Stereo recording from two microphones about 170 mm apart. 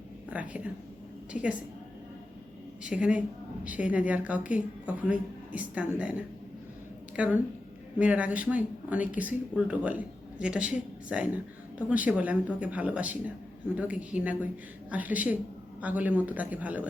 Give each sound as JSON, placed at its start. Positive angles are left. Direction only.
{"t": 0.3, "sound": "a man's voice", "side_deg": -10}
{"t": 2.8, "sound": "a man's voice", "side_deg": -5}